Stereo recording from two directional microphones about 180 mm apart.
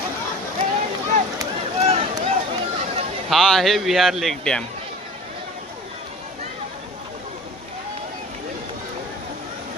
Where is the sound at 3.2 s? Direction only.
Centre (ahead or behind).